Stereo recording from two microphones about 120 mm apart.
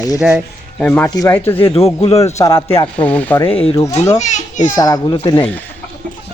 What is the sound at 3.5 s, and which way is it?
Speech, 50° left (ahead or behind).